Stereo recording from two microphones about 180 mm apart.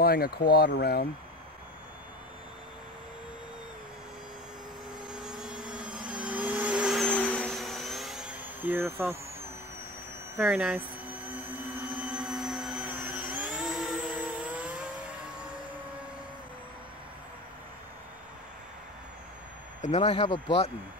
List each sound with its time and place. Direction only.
0.0 s speech: 60° left (ahead or behind)
5.0 s vacuum cleaner: 5° right (ahead or behind)
6.2 s vehicle: 5° right (ahead or behind)
10.3 s a sound: 10° right (ahead or behind)
12.1 s vacuum cleaner: 5° right (ahead or behind)
12.9 s vehicle: 10° right (ahead or behind)
19.8 s speech: 35° left (ahead or behind)